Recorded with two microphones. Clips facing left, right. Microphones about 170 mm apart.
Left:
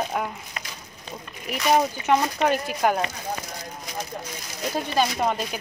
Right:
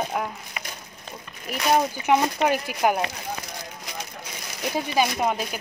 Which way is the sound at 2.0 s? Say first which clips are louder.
Right 1 dB; 10° right (ahead or behind).